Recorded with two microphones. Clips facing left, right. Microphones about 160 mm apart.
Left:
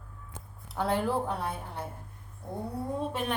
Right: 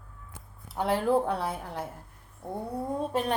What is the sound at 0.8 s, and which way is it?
Speech, 15° right (ahead or behind).